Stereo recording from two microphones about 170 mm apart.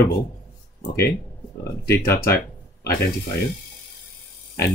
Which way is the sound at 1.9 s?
65° left (ahead or behind).